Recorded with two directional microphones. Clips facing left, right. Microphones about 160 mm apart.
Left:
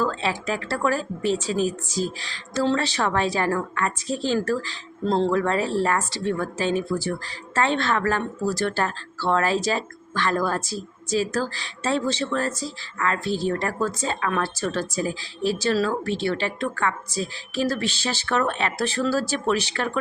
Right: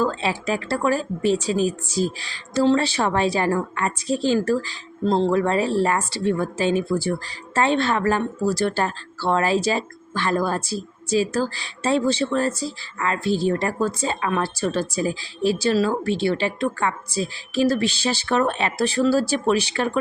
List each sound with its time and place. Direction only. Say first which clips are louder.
0.0 s speech: right 2 dB; 15° right (ahead or behind)
5.3 s speech: right 2 dB; 20° right (ahead or behind)